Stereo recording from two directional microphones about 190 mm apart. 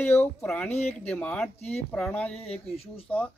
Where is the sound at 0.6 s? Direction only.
35° left (ahead or behind).